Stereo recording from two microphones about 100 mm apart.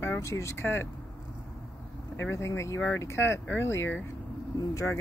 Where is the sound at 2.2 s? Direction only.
30° left (ahead or behind).